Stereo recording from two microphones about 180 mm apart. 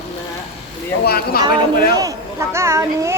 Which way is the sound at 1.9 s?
15° right (ahead or behind).